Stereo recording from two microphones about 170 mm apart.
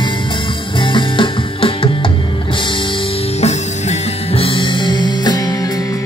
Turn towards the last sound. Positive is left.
turn(degrees=25)  # may be behind; listen again after turning